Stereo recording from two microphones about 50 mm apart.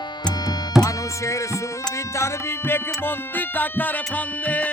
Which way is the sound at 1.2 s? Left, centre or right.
Left.